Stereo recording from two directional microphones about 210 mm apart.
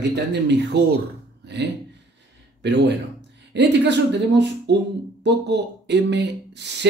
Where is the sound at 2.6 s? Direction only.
55° right (ahead or behind).